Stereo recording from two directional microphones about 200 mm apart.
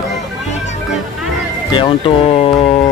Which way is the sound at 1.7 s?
25° left (ahead or behind).